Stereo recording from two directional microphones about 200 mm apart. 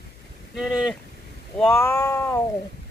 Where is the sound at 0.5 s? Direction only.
Centre (ahead or behind).